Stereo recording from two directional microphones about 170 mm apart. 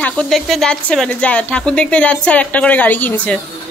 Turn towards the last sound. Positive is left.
turn(degrees=10)  # may be behind; listen again after turning